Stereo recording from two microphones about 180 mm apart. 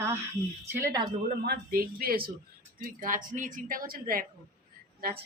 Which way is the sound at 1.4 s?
60° right (ahead or behind).